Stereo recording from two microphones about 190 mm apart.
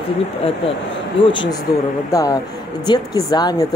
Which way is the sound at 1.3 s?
25° left (ahead or behind).